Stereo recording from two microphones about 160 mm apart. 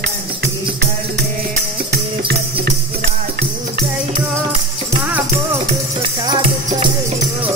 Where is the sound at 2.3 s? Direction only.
90° right.